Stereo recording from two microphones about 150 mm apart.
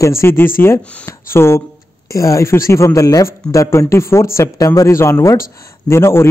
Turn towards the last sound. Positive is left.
turn(degrees=15)  # may be behind; listen again after turning